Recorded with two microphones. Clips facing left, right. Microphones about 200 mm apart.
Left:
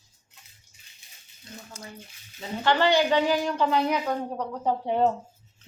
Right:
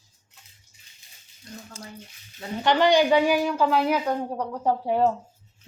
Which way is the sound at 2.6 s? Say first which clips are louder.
Right 3 dB; 15° right (ahead or behind).